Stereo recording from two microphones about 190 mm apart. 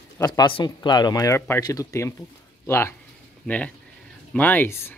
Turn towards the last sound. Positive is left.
turn(degrees=15)  # may be behind; listen again after turning